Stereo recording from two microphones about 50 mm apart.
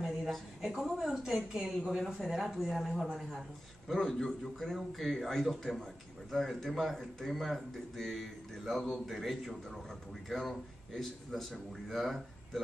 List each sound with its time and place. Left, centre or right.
0.0 s a woman's voice: centre
3.9 s speech: centre